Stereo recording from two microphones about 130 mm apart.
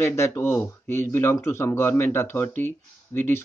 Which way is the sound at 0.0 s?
20° left (ahead or behind).